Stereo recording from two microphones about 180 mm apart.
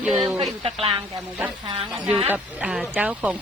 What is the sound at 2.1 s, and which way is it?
Speech, 5° right (ahead or behind).